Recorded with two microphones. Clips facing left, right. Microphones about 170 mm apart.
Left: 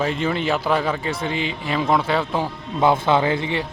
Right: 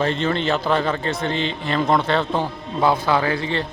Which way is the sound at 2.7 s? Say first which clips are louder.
Left 1 dB; 20° left (ahead or behind).